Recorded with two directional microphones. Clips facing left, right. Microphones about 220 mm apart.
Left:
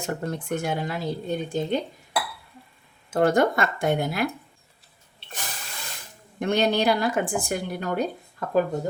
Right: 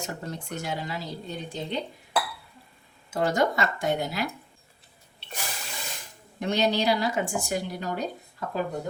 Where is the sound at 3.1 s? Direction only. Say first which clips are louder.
Left 5 dB; 55° left (ahead or behind).